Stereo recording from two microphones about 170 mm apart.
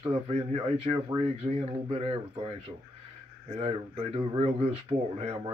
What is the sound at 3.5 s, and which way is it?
Speech, 35° right (ahead or behind).